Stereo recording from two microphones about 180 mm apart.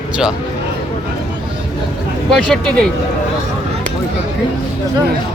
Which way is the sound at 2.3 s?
5° left (ahead or behind).